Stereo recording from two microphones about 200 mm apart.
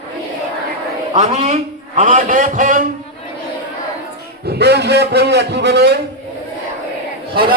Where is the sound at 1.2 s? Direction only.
35° right (ahead or behind).